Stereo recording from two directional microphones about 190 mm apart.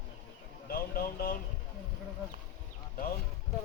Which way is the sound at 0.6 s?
50° left (ahead or behind).